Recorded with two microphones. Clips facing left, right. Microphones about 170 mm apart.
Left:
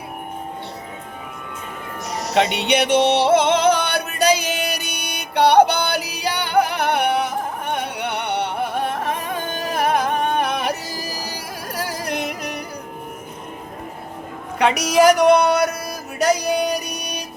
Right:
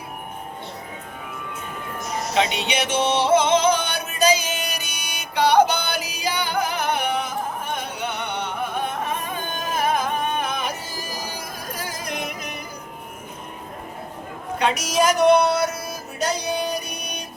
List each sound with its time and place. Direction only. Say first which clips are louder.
2.0 s music: left 3 dB; 60° left (ahead or behind)
14.6 s a woman's voice: left 6 dB; 65° left (ahead or behind)
15.5 s music: left 3 dB; 65° left (ahead or behind)